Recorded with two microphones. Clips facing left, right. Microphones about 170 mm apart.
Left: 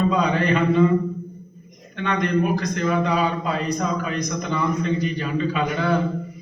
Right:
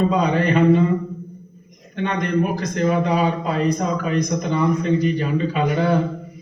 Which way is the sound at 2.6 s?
35° right (ahead or behind).